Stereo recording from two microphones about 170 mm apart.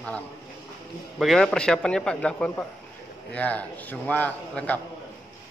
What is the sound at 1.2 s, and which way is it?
A man's voice, centre (ahead or behind).